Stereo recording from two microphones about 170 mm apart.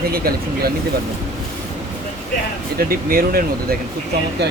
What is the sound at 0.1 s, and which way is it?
Speech, 60° right (ahead or behind).